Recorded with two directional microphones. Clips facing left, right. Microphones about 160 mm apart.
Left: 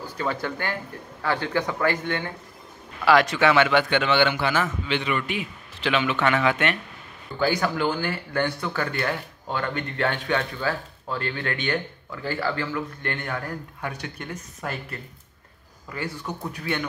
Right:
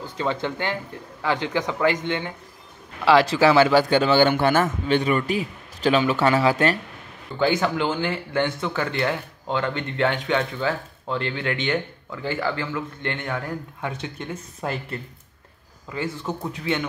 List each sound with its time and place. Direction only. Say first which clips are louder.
0.0 s a man's voice: right 2 dB; 20° right (ahead or behind)
7.3 s speech: right 2 dB; 20° right (ahead or behind)